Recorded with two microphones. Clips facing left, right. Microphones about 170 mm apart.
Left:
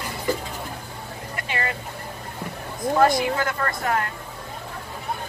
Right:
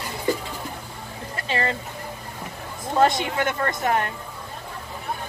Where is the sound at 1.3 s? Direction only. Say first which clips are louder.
Right 3 dB; 30° right (ahead or behind).